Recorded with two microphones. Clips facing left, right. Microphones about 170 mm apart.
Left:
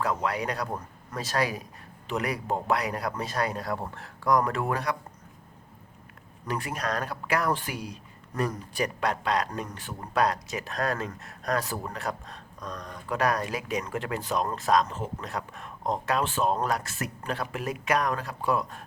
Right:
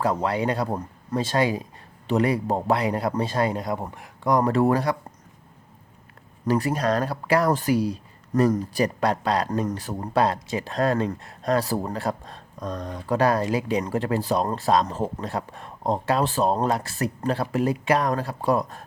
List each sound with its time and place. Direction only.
0.0 s speech: 30° right (ahead or behind)
6.4 s speech: 35° right (ahead or behind)